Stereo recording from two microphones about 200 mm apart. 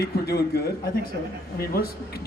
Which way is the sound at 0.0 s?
50° left (ahead or behind).